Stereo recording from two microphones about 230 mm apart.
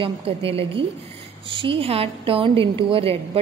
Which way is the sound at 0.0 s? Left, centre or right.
Right.